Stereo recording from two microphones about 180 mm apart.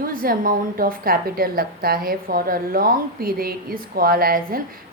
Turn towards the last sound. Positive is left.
turn(degrees=-55)  # may be behind; listen again after turning